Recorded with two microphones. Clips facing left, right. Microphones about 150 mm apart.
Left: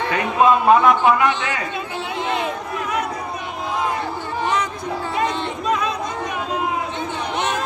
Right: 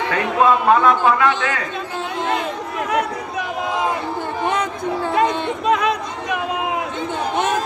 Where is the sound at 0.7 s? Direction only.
15° left (ahead or behind).